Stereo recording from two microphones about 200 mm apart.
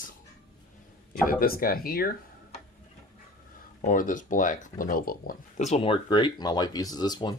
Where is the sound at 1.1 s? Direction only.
45° left (ahead or behind).